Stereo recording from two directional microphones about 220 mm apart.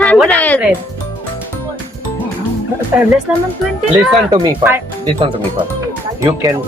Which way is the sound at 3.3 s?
5° right (ahead or behind).